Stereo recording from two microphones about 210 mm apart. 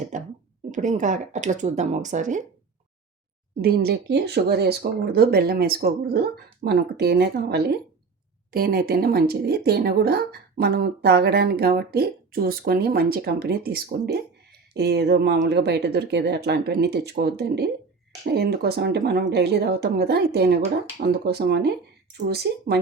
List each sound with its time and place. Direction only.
0.1 s a sound: 35° right (ahead or behind)
0.7 s speech: 35° right (ahead or behind)
3.6 s speech: 50° right (ahead or behind)